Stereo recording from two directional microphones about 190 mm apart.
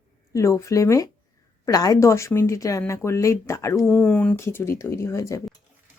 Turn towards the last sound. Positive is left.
turn(degrees=15)  # may be behind; listen again after turning